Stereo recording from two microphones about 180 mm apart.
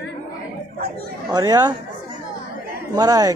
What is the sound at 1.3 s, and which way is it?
Speech, 20° right (ahead or behind).